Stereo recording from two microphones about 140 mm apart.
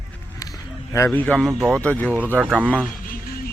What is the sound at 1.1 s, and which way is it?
Speech, 10° left (ahead or behind).